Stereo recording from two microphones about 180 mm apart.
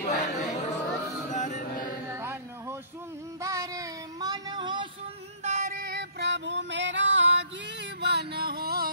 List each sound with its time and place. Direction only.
0.0 s chatter: 45° left (ahead or behind)
1.3 s mantra: 45° left (ahead or behind)
2.0 s a sound: 15° right (ahead or behind)
3.3 s child singing: 15° right (ahead or behind)
5.4 s music: 40° right (ahead or behind)
5.9 s music: 75° right (ahead or behind); by 7.3 s 90° right
8.0 s music: 65° right (ahead or behind)